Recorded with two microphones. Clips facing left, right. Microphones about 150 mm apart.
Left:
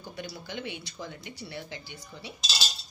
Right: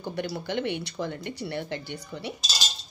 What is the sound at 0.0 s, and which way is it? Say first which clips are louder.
Speech: right 9 dB; 65° right (ahead or behind).